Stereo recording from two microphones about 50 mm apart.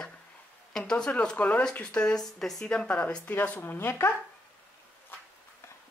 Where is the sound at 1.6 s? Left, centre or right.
Centre.